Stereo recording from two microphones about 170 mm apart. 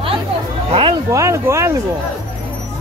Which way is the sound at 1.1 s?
15° right (ahead or behind).